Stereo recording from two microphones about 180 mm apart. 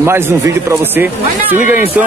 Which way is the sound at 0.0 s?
15° right (ahead or behind).